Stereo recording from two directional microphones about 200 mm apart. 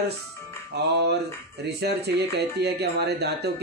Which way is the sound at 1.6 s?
55° right (ahead or behind).